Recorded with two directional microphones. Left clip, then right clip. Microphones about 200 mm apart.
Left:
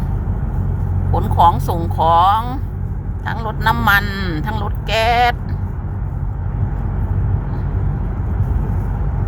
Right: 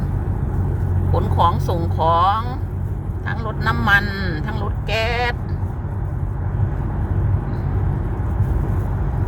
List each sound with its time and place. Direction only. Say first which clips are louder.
1.1 s speech: left 5 dB; 20° left (ahead or behind)